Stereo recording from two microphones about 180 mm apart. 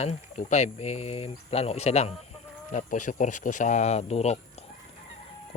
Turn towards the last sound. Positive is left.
turn(degrees=35)  # may be behind; listen again after turning